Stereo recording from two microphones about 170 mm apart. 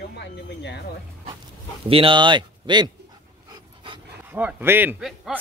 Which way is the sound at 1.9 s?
30° right (ahead or behind).